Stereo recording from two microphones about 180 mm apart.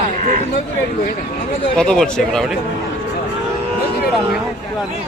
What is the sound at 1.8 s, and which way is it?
Speech, 5° left (ahead or behind).